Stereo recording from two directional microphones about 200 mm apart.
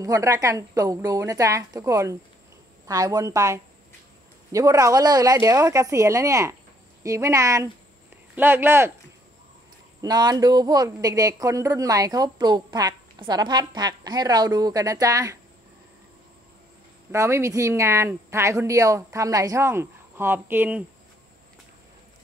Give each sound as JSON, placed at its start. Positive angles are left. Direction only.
{"t": 0.0, "sound": "speech", "side_deg": -15}
{"t": 10.0, "sound": "speech", "side_deg": -20}
{"t": 17.1, "sound": "speech", "side_deg": -15}